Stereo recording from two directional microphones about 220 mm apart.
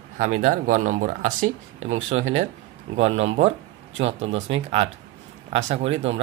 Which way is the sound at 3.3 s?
30° right (ahead or behind).